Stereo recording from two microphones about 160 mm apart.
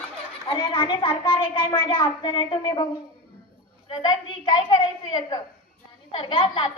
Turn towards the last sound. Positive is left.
turn(degrees=30)  # may be behind; listen again after turning